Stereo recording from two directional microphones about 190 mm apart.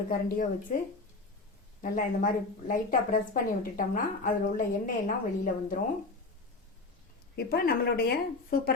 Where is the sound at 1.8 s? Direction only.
45° left (ahead or behind).